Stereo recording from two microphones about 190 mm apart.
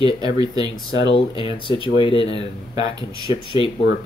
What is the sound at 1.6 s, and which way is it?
Speech, 30° left (ahead or behind).